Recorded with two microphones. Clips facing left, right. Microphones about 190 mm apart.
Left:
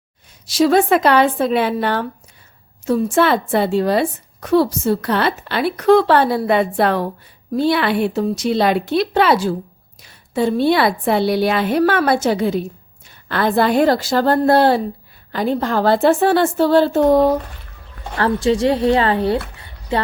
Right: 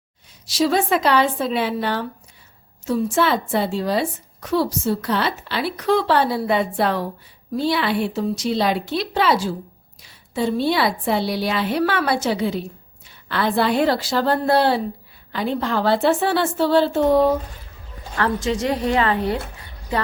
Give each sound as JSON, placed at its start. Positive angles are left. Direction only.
{"t": 0.4, "sound": "a woman's voice", "side_deg": 55}
{"t": 18.2, "sound": "a woman's voice", "side_deg": 30}